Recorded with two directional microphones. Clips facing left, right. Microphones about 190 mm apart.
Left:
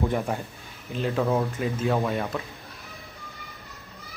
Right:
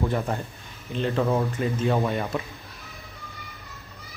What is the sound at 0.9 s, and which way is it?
Speech, 5° left (ahead or behind).